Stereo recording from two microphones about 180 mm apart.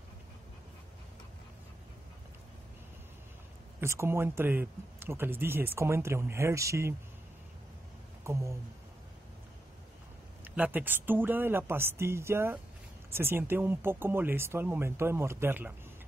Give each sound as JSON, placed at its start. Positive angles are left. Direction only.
{"t": 3.8, "sound": "speech", "side_deg": -15}
{"t": 8.2, "sound": "speech", "side_deg": -15}
{"t": 10.4, "sound": "speech", "side_deg": -10}